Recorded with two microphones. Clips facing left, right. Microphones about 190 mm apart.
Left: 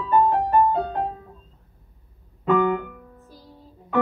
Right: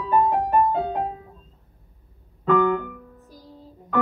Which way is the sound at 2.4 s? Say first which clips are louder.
Even; 10° left (ahead or behind).